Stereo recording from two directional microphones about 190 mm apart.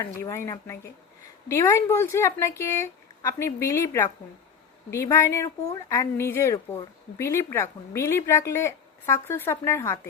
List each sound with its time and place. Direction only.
0.0 s speech: 15° left (ahead or behind)